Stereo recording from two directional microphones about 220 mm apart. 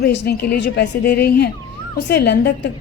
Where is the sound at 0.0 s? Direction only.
45° left (ahead or behind).